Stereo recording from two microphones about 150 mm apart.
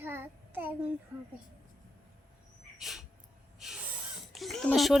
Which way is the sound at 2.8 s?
Centre (ahead or behind).